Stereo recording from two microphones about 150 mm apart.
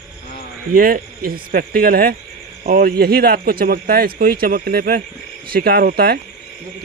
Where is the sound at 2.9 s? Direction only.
90° right.